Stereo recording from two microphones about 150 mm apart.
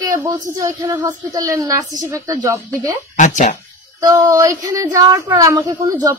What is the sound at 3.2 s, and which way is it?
Speech, 55° left (ahead or behind).